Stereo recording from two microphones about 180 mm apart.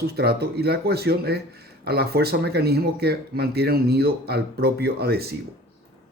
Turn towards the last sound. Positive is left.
turn(degrees=-60)  # may be behind; listen again after turning